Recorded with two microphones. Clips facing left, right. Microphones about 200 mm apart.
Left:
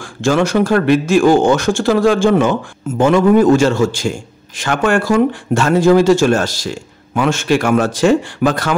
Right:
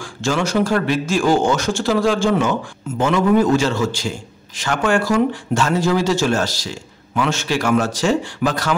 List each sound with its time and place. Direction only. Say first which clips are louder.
0.0 s a man's voice: left 6 dB; 55° left (ahead or behind)